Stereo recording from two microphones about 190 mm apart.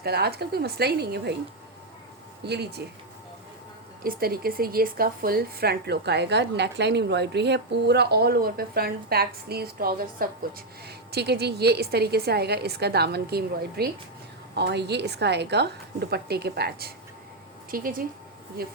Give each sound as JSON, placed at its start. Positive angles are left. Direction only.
{"t": 0.0, "sound": "speech", "side_deg": -55}
{"t": 2.4, "sound": "speech", "side_deg": -60}
{"t": 4.0, "sound": "speech", "side_deg": -50}